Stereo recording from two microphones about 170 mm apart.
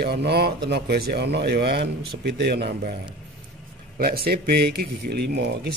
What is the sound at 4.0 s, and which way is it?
Speech, 60° right (ahead or behind).